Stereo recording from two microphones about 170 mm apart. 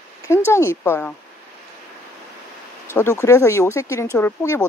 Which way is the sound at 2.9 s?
15° left (ahead or behind).